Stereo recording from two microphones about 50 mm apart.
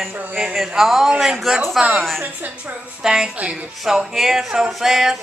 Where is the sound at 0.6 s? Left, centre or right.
Centre.